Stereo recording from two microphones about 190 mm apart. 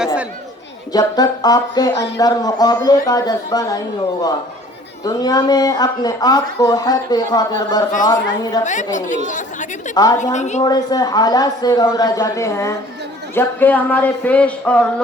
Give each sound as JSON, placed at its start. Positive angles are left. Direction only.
{"t": 0.9, "sound": "speech", "side_deg": 20}
{"t": 5.0, "sound": "speech", "side_deg": 20}
{"t": 8.6, "sound": "speech", "side_deg": 40}
{"t": 9.9, "sound": "speech", "side_deg": 20}
{"t": 10.3, "sound": "speech", "side_deg": 40}
{"t": 10.6, "sound": "speech", "side_deg": 20}